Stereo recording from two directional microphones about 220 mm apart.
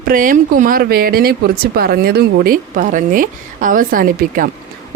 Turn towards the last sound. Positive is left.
turn(degrees=-40)  # may be behind; listen again after turning